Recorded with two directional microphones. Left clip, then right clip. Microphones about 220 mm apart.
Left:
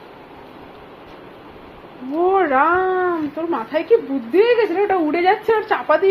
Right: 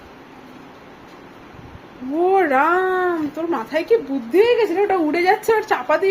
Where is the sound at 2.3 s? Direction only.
20° right (ahead or behind).